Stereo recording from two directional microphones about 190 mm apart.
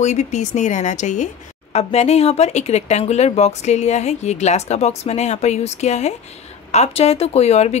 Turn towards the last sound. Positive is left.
turn(degrees=35)  # may be behind; listen again after turning